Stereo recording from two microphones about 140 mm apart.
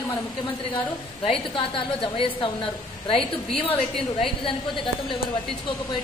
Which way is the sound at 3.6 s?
40° left (ahead or behind).